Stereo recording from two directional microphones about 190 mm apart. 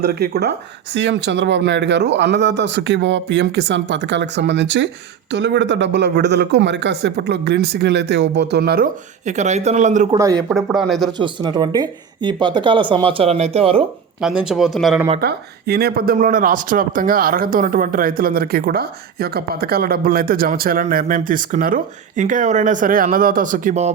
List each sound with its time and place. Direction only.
0.0 s a man's voice: 55° right (ahead or behind)
0.9 s a man's voice: 65° right (ahead or behind)
9.2 s speech: 40° right (ahead or behind)
10.2 s speech: 15° right (ahead or behind)
10.5 s speech: centre (ahead or behind)
11.2 s speech: 25° right (ahead or behind)
14.2 s speech: 5° right (ahead or behind)
15.2 s speech: 55° right (ahead or behind); by 23.9 s 40° right (ahead or behind)